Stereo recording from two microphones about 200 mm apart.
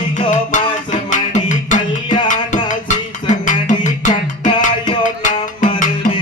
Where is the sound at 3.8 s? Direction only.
40° left (ahead or behind).